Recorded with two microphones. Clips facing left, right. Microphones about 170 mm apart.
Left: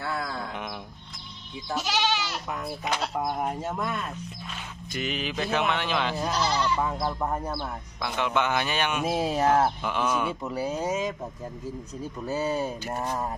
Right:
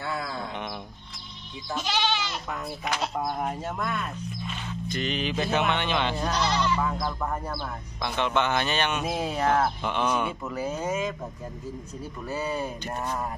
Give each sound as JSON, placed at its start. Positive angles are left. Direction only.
{"t": 0.0, "sound": "a sound", "side_deg": 0}
{"t": 1.7, "sound": "a man's voice", "side_deg": 5}
{"t": 6.8, "sound": "speech", "side_deg": 20}
{"t": 8.0, "sound": "a man's voice", "side_deg": 5}
{"t": 9.1, "sound": "speech", "side_deg": 35}
{"t": 9.8, "sound": "a man's voice", "side_deg": 5}
{"t": 12.5, "sound": "a man's voice", "side_deg": 5}